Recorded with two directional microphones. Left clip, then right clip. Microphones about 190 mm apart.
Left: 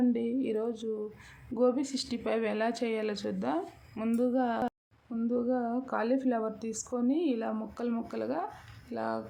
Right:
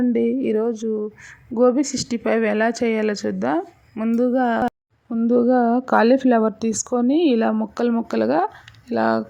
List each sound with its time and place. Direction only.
0.0 s speech: 35° right (ahead or behind)
3.9 s speech: 20° right (ahead or behind)
4.2 s speech: 35° right (ahead or behind)